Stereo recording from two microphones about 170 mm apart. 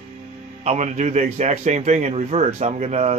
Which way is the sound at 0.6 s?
40° right (ahead or behind).